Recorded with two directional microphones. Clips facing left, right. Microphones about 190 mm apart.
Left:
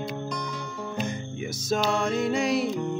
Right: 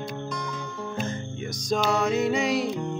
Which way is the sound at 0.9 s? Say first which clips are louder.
Left 1 dB; 10° left (ahead or behind).